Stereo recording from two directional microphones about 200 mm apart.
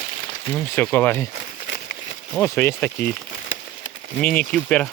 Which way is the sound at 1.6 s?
55° left (ahead or behind).